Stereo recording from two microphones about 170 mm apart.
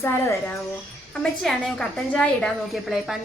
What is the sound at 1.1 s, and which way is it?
A woman's voice, 5° left (ahead or behind).